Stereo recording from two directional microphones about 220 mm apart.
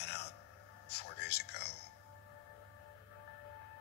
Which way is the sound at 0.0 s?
50° left (ahead or behind).